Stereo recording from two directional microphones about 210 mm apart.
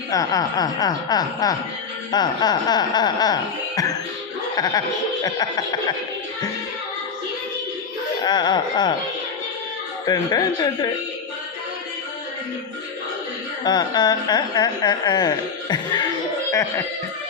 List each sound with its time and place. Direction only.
0.1 s speech: 15° left (ahead or behind)
4.5 s speech: 20° left (ahead or behind)
8.2 s speech: 20° left (ahead or behind)
10.1 s speech: 20° left (ahead or behind)
13.7 s speech: 20° left (ahead or behind)